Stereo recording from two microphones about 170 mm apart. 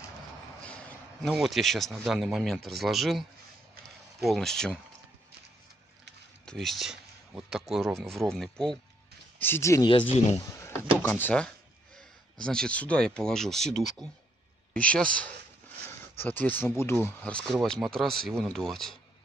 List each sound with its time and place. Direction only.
0.7 s a man's voice: 5° left (ahead or behind)
3.8 s a sound: centre (ahead or behind)
6.4 s speech: 5° left (ahead or behind)
9.4 s speech: 15° left (ahead or behind)